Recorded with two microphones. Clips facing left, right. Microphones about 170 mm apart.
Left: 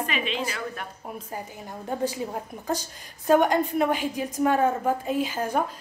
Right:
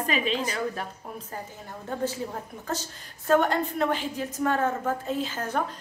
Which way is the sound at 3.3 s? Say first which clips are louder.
Left 3 dB; 15° left (ahead or behind).